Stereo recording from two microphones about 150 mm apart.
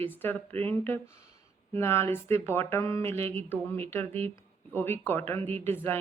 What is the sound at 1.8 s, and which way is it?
A woman's voice, 15° left (ahead or behind).